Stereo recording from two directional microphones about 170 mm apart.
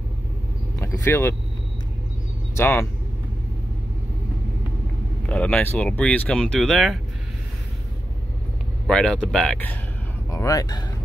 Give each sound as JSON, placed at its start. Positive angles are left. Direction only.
{"t": 0.7, "sound": "vehicle", "side_deg": 15}
{"t": 2.5, "sound": "speech", "side_deg": 15}
{"t": 5.3, "sound": "speech", "side_deg": 5}
{"t": 8.8, "sound": "speech", "side_deg": 5}
{"t": 10.3, "sound": "speech", "side_deg": 20}